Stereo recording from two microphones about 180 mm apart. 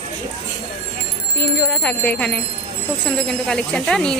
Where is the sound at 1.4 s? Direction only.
5° left (ahead or behind).